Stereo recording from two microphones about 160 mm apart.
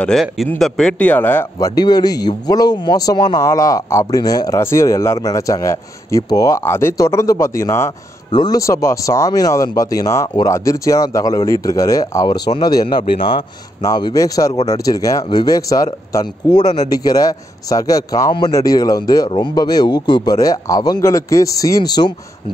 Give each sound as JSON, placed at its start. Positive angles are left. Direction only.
{"t": 0.0, "sound": "a man's voice", "side_deg": 0}
{"t": 1.8, "sound": "a man's voice", "side_deg": 25}